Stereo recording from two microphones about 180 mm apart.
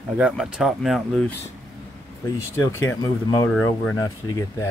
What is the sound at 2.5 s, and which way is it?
Speech, 15° left (ahead or behind).